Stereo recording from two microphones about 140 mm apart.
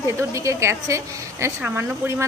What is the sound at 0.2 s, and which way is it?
A woman's voice, 20° right (ahead or behind).